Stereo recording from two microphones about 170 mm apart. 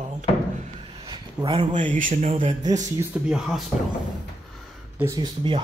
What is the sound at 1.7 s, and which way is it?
Speech, 45° right (ahead or behind).